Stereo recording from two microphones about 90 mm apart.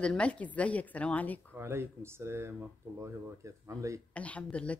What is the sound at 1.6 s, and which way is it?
Speech, 30° right (ahead or behind).